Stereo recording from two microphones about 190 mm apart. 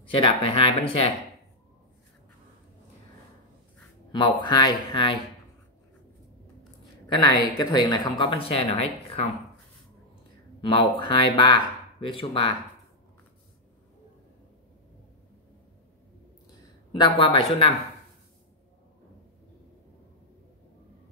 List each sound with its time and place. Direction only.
0.1 s speech: 30° left (ahead or behind)
4.1 s speech: 25° left (ahead or behind)
7.1 s speech: 20° left (ahead or behind)
10.6 s speech: 25° left (ahead or behind)
16.9 s speech: 25° left (ahead or behind)